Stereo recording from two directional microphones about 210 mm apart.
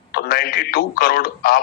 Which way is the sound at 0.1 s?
45° left (ahead or behind).